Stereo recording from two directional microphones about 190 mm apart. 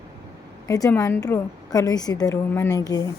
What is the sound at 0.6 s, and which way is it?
A woman's voice, 20° left (ahead or behind).